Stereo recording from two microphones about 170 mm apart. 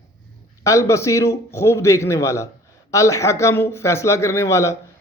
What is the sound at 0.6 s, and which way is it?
A man's voice, 15° left (ahead or behind).